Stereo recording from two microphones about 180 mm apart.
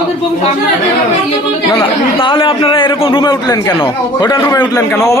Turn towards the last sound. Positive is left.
turn(degrees=15)  # may be behind; listen again after turning